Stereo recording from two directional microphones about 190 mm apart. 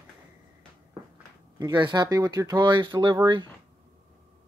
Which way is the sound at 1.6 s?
20° right (ahead or behind).